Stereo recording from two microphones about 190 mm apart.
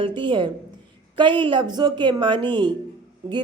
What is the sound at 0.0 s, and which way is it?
A woman's voice, 25° right (ahead or behind).